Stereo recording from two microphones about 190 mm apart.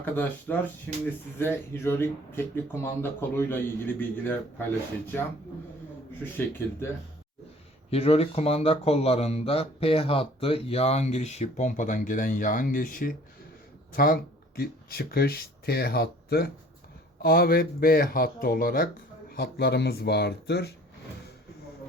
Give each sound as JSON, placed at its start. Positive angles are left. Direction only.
{"t": 0.0, "sound": "speech", "side_deg": 10}
{"t": 6.3, "sound": "speech", "side_deg": 15}
{"t": 7.9, "sound": "speech", "side_deg": 30}